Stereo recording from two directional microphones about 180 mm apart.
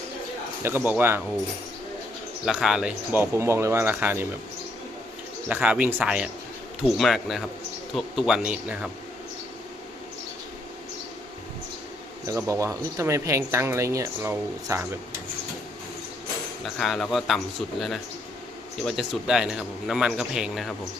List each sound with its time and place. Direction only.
0.6 s speech: 10° right (ahead or behind)
2.5 s speech: centre (ahead or behind)
5.5 s a man's voice: 10° right (ahead or behind)
12.2 s speech: 15° right (ahead or behind)
16.6 s a man's voice: centre (ahead or behind)